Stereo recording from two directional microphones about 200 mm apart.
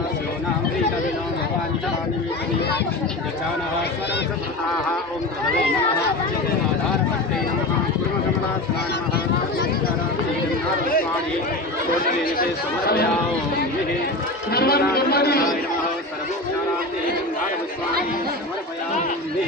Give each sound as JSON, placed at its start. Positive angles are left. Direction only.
{"t": 12.1, "sound": "speech", "side_deg": 45}
{"t": 14.5, "sound": "speech", "side_deg": 50}